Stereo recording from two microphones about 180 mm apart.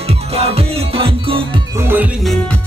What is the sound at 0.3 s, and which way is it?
Music, 35° right (ahead or behind).